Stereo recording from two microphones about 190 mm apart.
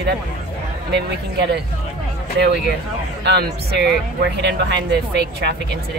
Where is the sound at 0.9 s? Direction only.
65° right (ahead or behind).